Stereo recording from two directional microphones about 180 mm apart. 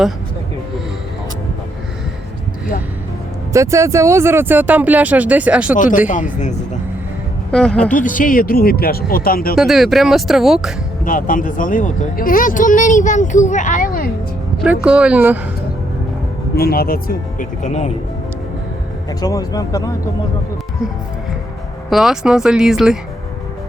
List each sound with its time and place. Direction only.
3.5 s speech: 15° right (ahead or behind)
5.7 s speech: 45° left (ahead or behind)
7.5 s speech: 5° left (ahead or behind)
7.9 s speech: 45° left (ahead or behind)
9.6 s speech: centre (ahead or behind)
11.0 s speech: 50° left (ahead or behind)
14.6 s speech: 5° right (ahead or behind)
16.6 s speech: 55° left (ahead or behind); by 17.9 s 40° left (ahead or behind)
19.2 s speech: 20° left (ahead or behind)
21.8 s speech: centre (ahead or behind)